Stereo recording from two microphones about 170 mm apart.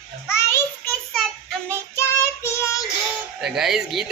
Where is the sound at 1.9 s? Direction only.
15° left (ahead or behind).